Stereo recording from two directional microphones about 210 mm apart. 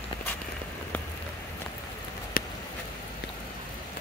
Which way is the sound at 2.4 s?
45° left (ahead or behind).